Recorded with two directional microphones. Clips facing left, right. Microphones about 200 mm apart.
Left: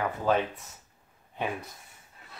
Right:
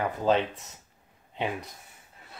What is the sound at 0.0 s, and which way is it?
Speech, 20° right (ahead or behind).